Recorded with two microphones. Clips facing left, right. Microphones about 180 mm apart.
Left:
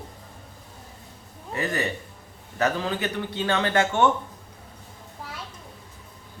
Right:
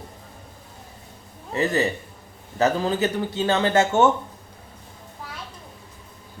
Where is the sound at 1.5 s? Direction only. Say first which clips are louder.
Right 5 dB; 25° right (ahead or behind).